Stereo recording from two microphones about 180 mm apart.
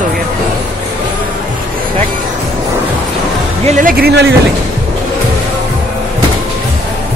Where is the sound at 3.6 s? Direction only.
45° right (ahead or behind); by 4.3 s 70° right (ahead or behind).